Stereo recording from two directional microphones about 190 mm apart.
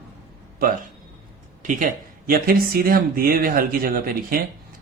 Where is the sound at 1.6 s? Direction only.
45° right (ahead or behind).